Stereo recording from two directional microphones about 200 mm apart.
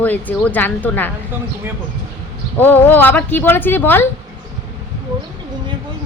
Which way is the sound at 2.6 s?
10° left (ahead or behind).